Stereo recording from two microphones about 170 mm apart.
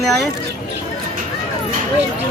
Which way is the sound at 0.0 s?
Centre (ahead or behind).